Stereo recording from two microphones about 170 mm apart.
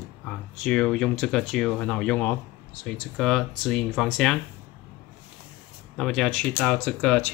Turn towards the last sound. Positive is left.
turn(degrees=5)  # may be behind; listen again after turning